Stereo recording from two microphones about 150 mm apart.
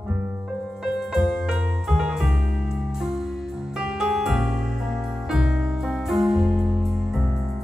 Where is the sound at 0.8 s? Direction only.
5° right (ahead or behind).